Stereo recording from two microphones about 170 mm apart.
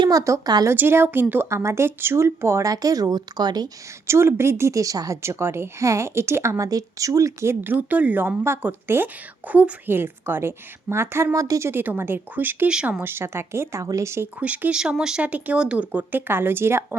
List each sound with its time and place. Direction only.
0.0 s speech: 20° right (ahead or behind)